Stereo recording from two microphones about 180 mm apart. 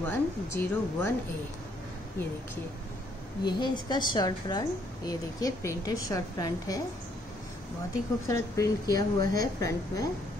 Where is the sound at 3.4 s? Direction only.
25° left (ahead or behind).